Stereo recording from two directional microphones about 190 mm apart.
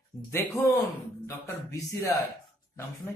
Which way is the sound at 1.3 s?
15° left (ahead or behind).